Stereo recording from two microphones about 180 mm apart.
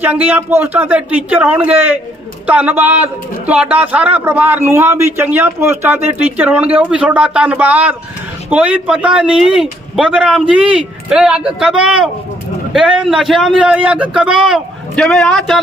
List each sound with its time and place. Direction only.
0.0 s a man's voice: 10° right (ahead or behind)